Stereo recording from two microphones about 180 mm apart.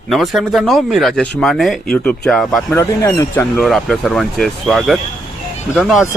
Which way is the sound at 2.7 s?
20° left (ahead or behind).